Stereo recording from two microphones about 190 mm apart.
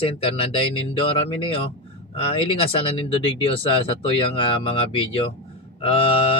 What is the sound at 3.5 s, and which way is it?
Speech, 30° left (ahead or behind).